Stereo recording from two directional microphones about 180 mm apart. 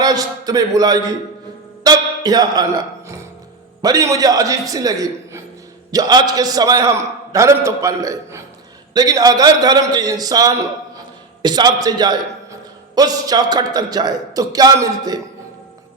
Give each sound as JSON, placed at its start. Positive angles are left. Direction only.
{"t": 0.0, "sound": "a man's voice", "side_deg": -20}
{"t": 1.8, "sound": "music", "side_deg": -20}
{"t": 3.8, "sound": "a man's voice", "side_deg": -20}